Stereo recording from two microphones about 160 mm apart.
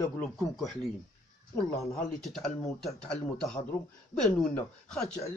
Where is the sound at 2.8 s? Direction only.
Centre (ahead or behind).